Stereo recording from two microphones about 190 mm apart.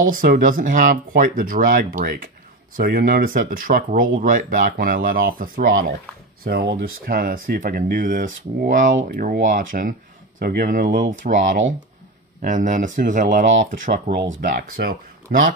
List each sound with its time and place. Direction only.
0.0 s speech: 50° right (ahead or behind)
12.4 s speech: 40° right (ahead or behind)
15.3 s speech: 60° right (ahead or behind)